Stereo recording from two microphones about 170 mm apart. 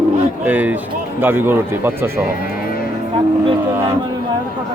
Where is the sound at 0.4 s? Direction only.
10° right (ahead or behind).